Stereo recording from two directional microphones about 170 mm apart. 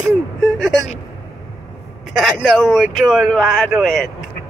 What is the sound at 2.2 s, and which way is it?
Speech, centre (ahead or behind).